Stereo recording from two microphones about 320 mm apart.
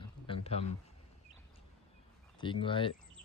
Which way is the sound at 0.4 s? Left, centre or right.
Centre.